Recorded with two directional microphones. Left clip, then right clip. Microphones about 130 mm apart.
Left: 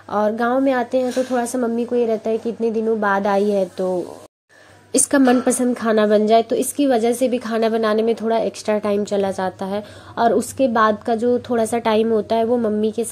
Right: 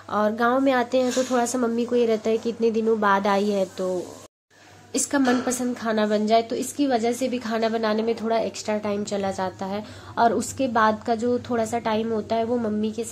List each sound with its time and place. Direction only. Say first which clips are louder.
0.1 s a woman's voice: left 3 dB; 20° left (ahead or behind)
0.6 s speech: left 3 dB; 10° left (ahead or behind)
4.9 s a woman's voice: left 7 dB; 45° left (ahead or behind)
12.1 s a woman's voice: left 6 dB; 30° left (ahead or behind)